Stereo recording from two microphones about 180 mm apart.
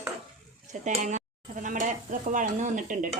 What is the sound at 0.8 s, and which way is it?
Speech, 45° right (ahead or behind).